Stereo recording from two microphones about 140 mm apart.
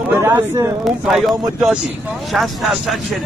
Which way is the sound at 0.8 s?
Centre (ahead or behind).